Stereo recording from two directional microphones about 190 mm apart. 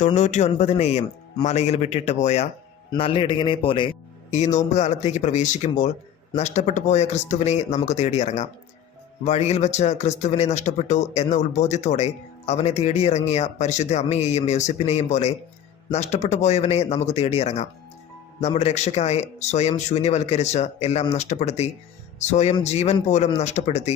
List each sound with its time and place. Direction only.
0.0 s a man's voice: 40° left (ahead or behind)